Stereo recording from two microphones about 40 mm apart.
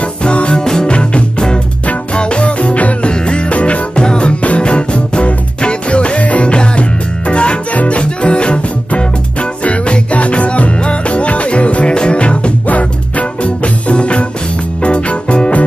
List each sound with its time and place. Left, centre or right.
0.2 s music: left
4.0 s music: left
4.4 s music: left